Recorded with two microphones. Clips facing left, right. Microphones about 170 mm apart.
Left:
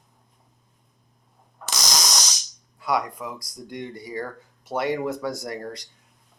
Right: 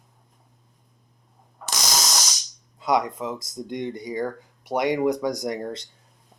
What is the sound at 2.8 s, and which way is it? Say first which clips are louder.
Speech: right 3 dB; 20° right (ahead or behind).